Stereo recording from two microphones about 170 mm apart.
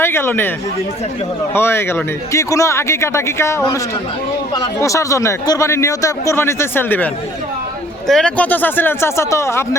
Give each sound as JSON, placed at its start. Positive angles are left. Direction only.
{"t": 0.0, "sound": "a man's voice", "side_deg": 15}
{"t": 1.5, "sound": "speech", "side_deg": 15}